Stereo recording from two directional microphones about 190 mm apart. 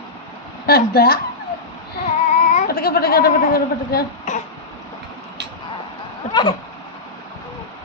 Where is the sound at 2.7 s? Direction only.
55° left (ahead or behind).